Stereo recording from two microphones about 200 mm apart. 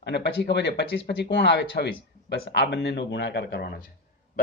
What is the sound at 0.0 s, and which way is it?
Speech, 60° left (ahead or behind).